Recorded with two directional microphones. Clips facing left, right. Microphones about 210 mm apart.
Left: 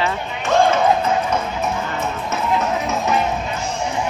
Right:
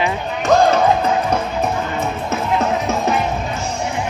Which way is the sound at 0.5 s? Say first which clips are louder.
Right 2 dB; 40° right (ahead or behind).